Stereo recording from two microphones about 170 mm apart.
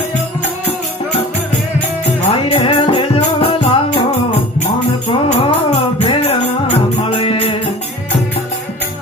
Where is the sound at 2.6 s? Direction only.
30° left (ahead or behind).